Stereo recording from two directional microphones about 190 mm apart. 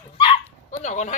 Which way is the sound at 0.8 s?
40° left (ahead or behind).